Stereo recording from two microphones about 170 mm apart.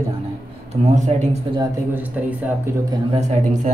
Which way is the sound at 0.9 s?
45° right (ahead or behind).